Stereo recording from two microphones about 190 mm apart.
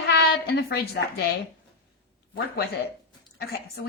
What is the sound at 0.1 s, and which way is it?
A woman's voice, 55° left (ahead or behind).